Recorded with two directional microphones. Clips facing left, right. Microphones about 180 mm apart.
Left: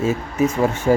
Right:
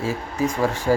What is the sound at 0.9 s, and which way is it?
Speech, 20° left (ahead or behind).